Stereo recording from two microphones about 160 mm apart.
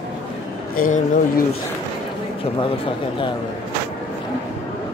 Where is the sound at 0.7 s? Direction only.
60° left (ahead or behind).